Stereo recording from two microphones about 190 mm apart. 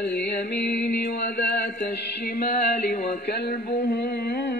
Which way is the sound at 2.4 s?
50° left (ahead or behind).